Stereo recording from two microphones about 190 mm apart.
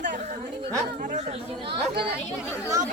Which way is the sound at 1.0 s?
35° right (ahead or behind).